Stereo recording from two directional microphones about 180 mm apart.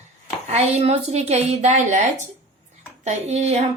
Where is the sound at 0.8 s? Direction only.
35° right (ahead or behind).